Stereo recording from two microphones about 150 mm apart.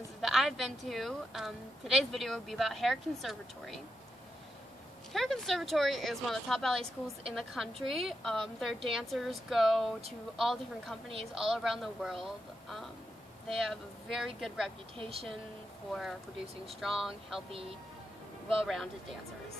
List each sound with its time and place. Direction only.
0.2 s a woman's voice: centre (ahead or behind)
5.1 s a woman's voice: centre (ahead or behind)
17.5 s speech: 40° right (ahead or behind)
18.5 s a woman's voice: centre (ahead or behind)